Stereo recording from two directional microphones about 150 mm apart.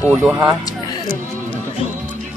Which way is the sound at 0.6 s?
25° left (ahead or behind).